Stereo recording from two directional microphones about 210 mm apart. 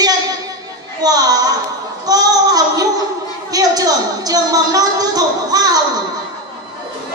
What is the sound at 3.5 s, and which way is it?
A woman's voice, 15° right (ahead or behind).